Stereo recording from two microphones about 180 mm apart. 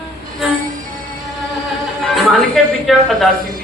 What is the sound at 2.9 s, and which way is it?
Speech, centre (ahead or behind).